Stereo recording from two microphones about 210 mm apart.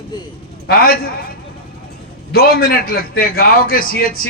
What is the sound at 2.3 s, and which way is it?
A man's voice, 45° left (ahead or behind).